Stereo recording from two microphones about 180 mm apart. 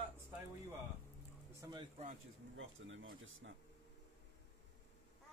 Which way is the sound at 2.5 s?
90° right.